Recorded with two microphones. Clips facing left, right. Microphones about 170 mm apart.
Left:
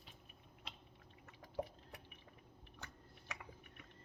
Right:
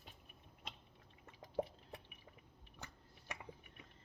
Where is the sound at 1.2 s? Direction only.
30° right (ahead or behind).